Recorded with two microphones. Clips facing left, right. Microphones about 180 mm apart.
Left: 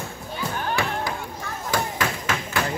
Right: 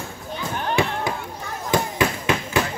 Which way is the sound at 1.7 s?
20° right (ahead or behind).